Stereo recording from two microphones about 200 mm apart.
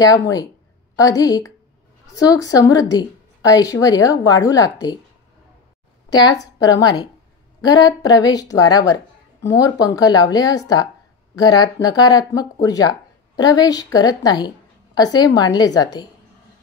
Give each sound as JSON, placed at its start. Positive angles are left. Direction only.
{"t": 0.9, "sound": "a woman's voice", "side_deg": 15}
{"t": 6.0, "sound": "a woman's voice", "side_deg": 20}